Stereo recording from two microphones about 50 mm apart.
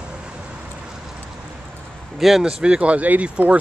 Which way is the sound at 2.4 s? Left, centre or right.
Centre.